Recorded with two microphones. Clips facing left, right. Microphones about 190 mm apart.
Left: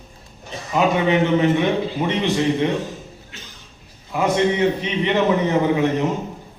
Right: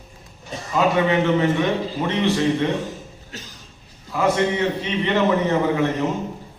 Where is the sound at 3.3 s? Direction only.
40° right (ahead or behind).